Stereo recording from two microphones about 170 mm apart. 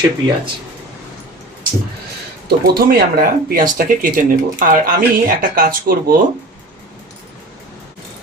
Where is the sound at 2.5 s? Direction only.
65° right (ahead or behind).